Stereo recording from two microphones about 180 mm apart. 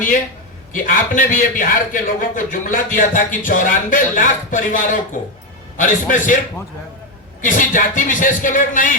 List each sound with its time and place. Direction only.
0.7 s a man's voice: 50° left (ahead or behind)
7.4 s a man's voice: 45° left (ahead or behind)